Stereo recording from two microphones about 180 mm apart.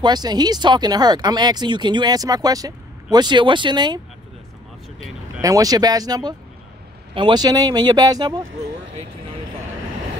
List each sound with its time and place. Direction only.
0.0 s speech: 25° right (ahead or behind)
5.4 s speech: 20° right (ahead or behind)